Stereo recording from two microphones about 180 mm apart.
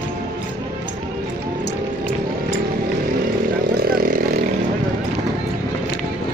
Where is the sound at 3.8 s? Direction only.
55° right (ahead or behind).